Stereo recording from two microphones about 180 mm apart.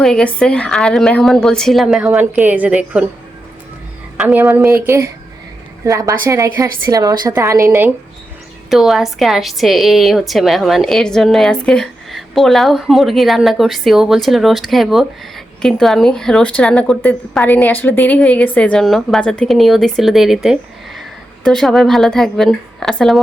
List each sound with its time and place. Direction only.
0.0 s a woman's voice: 5° left (ahead or behind)
4.2 s a woman's voice: 10° right (ahead or behind)
8.7 s a woman's voice: centre (ahead or behind)